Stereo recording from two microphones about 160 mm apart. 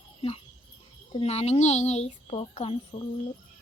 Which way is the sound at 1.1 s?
40° left (ahead or behind).